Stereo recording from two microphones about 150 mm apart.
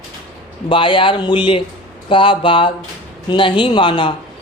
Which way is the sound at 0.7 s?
35° left (ahead or behind).